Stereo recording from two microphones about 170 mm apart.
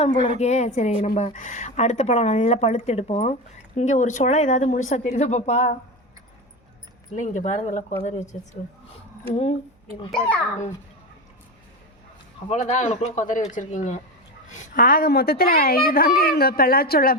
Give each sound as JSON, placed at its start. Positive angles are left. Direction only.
{"t": 0.3, "sound": "a woman's voice", "side_deg": 40}
{"t": 7.2, "sound": "a woman's voice", "side_deg": 45}
{"t": 10.1, "sound": "a child's voice", "side_deg": 5}
{"t": 12.5, "sound": "a woman's voice", "side_deg": 45}